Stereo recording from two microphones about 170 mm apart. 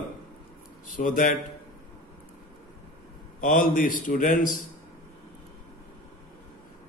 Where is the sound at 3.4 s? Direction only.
55° left (ahead or behind).